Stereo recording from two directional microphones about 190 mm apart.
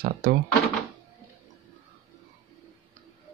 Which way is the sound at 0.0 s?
55° right (ahead or behind).